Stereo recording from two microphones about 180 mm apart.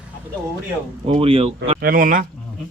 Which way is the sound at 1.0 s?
35° right (ahead or behind).